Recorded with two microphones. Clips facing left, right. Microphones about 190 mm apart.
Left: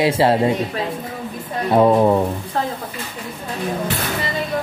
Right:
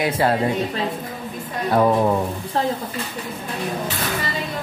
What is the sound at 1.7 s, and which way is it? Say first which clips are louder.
Speech: left 4 dB; 20° left (ahead or behind).